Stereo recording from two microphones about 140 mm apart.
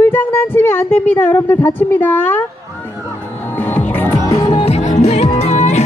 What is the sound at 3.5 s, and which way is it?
Music, 15° left (ahead or behind).